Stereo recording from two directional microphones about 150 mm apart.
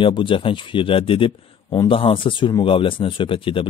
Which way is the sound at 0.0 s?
35° left (ahead or behind).